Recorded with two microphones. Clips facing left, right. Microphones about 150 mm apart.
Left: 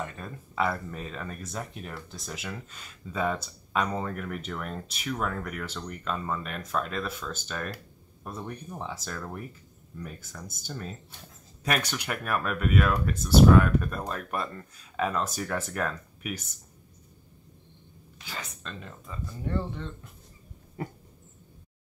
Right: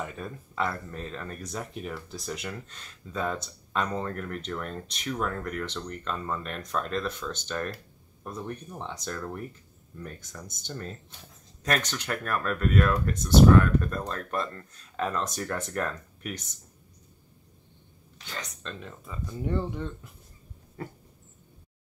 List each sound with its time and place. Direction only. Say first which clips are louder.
0.0 s speech: right 1 dB; 5° right (ahead or behind)
0.7 s speech: left 2 dB; 5° left (ahead or behind)
18.2 s speech: right 1 dB; 5° left (ahead or behind)
19.4 s speech: right 2 dB; 15° right (ahead or behind)